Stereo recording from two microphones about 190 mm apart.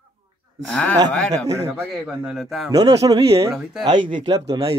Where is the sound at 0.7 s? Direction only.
5° left (ahead or behind).